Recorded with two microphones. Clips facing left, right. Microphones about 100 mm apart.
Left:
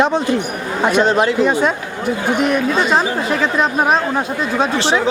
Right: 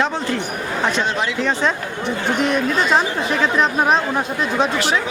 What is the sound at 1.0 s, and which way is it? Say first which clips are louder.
Speech: left 7 dB; 40° left (ahead or behind).